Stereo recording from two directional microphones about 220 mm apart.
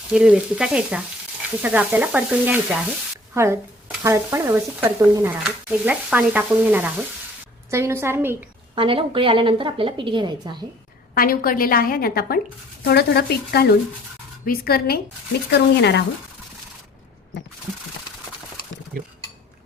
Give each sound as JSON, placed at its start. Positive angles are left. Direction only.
{"t": 0.1, "sound": "speech", "side_deg": -5}
{"t": 8.7, "sound": "a woman's voice", "side_deg": -25}
{"t": 11.1, "sound": "a woman's voice", "side_deg": 40}
{"t": 18.9, "sound": "speech", "side_deg": -40}